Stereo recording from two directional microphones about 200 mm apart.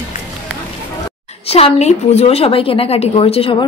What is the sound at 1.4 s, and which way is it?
A woman's voice, 30° left (ahead or behind).